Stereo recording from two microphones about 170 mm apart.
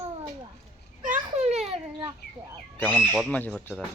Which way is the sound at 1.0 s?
45° right (ahead or behind).